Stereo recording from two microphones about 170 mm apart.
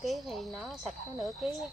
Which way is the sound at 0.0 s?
Centre (ahead or behind).